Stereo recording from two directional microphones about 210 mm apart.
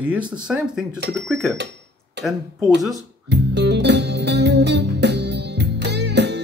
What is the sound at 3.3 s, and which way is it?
Music, 55° right (ahead or behind).